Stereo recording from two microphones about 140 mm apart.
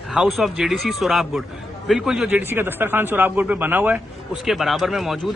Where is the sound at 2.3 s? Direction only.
15° right (ahead or behind).